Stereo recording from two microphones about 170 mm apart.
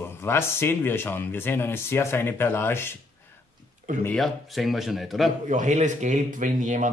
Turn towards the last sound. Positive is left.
turn(degrees=-45)  # may be behind; listen again after turning